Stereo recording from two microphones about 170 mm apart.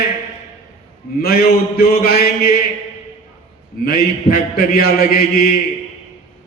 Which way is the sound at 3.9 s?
60° left (ahead or behind).